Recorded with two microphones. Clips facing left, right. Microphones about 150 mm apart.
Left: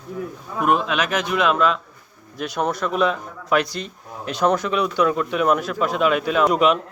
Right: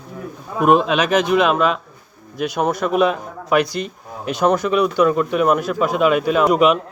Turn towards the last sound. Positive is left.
turn(degrees=-5)  # may be behind; listen again after turning